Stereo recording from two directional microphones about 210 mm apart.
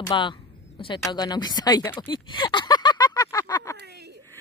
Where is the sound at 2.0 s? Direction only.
20° left (ahead or behind).